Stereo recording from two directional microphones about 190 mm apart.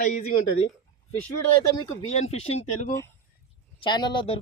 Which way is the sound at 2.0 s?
35° left (ahead or behind).